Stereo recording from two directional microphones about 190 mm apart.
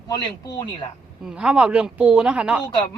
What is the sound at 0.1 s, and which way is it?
Speech, 20° left (ahead or behind).